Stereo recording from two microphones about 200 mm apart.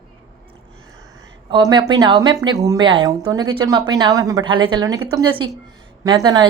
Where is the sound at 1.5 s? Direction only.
20° right (ahead or behind).